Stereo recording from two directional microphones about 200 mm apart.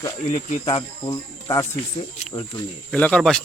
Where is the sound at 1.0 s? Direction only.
20° left (ahead or behind).